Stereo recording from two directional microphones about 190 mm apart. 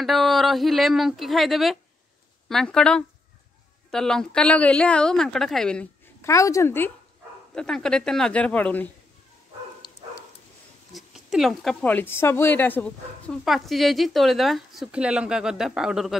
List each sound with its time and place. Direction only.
0.0 s speech: centre (ahead or behind)
6.2 s a woman's voice: 15° left (ahead or behind)
9.8 s a sound: 25° left (ahead or behind)
10.9 s speech: centre (ahead or behind)